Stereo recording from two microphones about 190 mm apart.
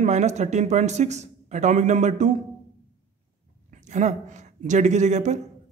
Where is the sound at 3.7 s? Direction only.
40° right (ahead or behind).